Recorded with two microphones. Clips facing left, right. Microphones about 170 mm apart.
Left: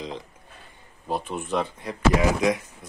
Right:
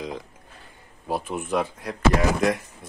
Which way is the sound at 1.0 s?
10° right (ahead or behind).